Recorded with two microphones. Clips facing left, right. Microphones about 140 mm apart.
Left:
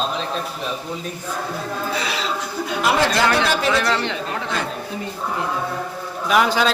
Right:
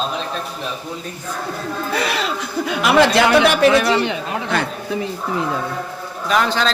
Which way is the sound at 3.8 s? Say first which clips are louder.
Right 4 dB; 10° right (ahead or behind).